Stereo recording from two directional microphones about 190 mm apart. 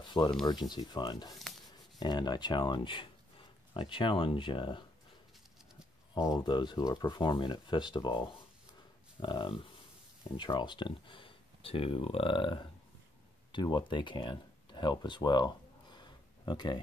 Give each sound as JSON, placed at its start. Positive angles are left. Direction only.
{"t": 0.2, "sound": "speech", "side_deg": 20}
{"t": 6.1, "sound": "speech", "side_deg": 25}